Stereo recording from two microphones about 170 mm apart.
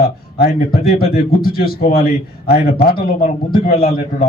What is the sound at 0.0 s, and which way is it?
A man's voice, 60° left (ahead or behind).